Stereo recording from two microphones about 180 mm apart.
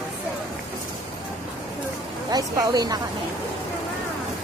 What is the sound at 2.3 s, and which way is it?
Speech, 20° right (ahead or behind).